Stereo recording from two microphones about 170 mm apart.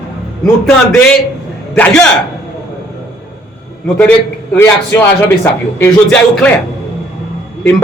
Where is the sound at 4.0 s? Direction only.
10° left (ahead or behind).